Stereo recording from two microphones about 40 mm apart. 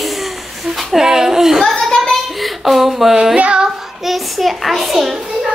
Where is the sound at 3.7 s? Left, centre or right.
Centre.